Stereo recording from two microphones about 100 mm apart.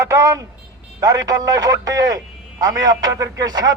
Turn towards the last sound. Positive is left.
turn(degrees=-40)  # may be behind; listen again after turning